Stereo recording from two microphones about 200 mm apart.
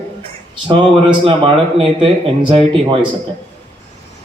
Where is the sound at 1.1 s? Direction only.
25° right (ahead or behind).